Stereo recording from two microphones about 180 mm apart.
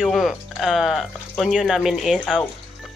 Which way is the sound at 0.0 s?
Centre (ahead or behind).